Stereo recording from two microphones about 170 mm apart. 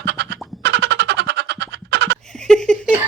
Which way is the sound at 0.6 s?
80° right.